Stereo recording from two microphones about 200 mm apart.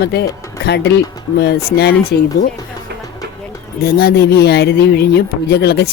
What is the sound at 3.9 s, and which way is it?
Speech, 50° left (ahead or behind).